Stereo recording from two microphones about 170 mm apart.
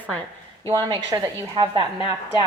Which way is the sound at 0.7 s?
20° right (ahead or behind).